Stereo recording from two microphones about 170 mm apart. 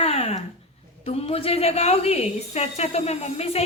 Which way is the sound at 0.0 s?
35° left (ahead or behind).